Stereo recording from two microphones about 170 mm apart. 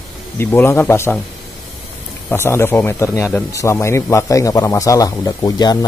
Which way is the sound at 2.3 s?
15° left (ahead or behind).